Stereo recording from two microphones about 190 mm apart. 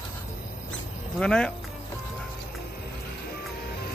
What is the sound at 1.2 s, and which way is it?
Speech, 5° left (ahead or behind).